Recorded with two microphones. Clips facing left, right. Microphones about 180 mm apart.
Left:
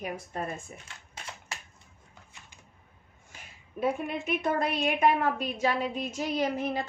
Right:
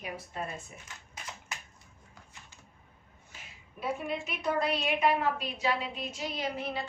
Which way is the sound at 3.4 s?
50° left (ahead or behind).